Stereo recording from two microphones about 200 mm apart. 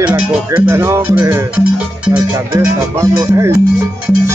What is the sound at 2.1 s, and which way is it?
Speech, 15° right (ahead or behind).